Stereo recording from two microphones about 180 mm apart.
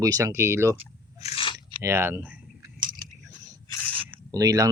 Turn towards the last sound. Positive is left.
turn(degrees=-20)  # may be behind; listen again after turning